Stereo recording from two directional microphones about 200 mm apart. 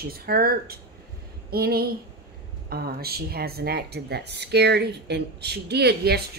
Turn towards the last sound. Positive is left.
turn(degrees=-55)  # may be behind; listen again after turning